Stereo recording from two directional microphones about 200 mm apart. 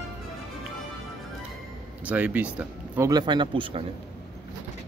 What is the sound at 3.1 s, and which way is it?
Speech, 20° right (ahead or behind).